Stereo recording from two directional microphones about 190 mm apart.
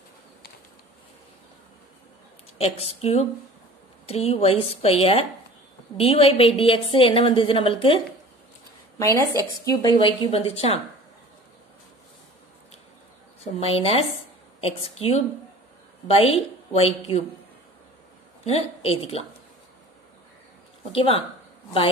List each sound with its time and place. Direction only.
2.6 s a woman's voice: 35° left (ahead or behind)
8.9 s a woman's voice: 15° left (ahead or behind); by 10.8 s 35° left (ahead or behind)
13.4 s a woman's voice: 30° left (ahead or behind)
18.4 s a woman's voice: 30° left (ahead or behind)
20.9 s a woman's voice: 30° left (ahead or behind)